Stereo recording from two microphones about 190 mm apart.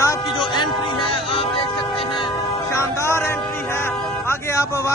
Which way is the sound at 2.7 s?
15° left (ahead or behind).